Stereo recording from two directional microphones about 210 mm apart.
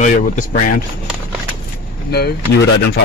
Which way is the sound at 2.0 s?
50° left (ahead or behind).